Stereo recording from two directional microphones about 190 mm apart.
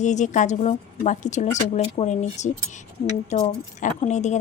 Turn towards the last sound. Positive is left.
turn(degrees=40)  # may be behind; listen again after turning